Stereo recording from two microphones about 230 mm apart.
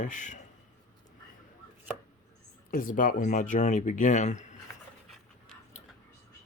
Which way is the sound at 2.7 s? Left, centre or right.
Left.